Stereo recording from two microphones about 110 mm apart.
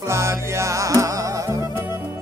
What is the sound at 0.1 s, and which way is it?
Music, 25° right (ahead or behind).